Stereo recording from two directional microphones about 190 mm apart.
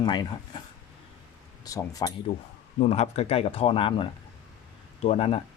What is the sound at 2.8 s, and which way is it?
Speech, 35° left (ahead or behind).